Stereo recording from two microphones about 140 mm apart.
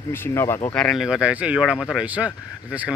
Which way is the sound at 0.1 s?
15° left (ahead or behind).